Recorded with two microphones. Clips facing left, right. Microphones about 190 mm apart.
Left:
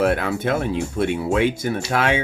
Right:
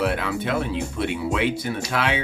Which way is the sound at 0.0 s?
45° left (ahead or behind).